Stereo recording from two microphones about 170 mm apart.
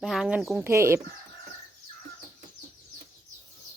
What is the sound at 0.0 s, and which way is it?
Speech, centre (ahead or behind).